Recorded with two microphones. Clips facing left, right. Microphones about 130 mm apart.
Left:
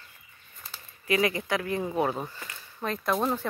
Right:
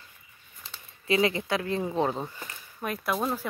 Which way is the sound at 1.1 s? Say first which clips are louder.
Right 1 dB; 25° right (ahead or behind).